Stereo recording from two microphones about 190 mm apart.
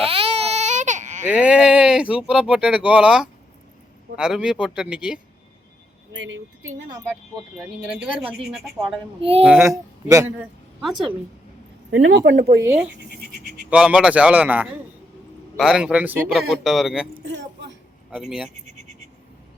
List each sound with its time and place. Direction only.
0.0 s baby cry: 30° right (ahead or behind)
1.3 s speech: 5° right (ahead or behind)
6.1 s a sound: 80° right
6.9 s a woman's voice: 10° right (ahead or behind)
11.9 s speech: 75° right (ahead or behind)
13.1 s goat: 55° right (ahead or behind)
13.7 s a woman's voice: 5° right (ahead or behind)
17.2 s a sound: 70° right (ahead or behind)
18.1 s speech: centre (ahead or behind)
18.6 s a sound: 40° right (ahead or behind)